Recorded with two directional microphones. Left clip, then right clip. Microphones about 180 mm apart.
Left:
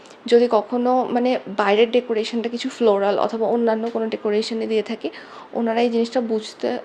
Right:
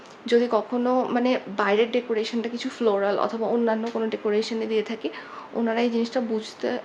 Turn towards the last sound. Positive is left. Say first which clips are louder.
# left 4 dB
turn(degrees=25)  # may be behind; listen again after turning